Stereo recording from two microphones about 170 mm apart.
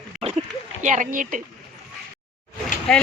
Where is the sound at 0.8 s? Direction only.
50° right (ahead or behind).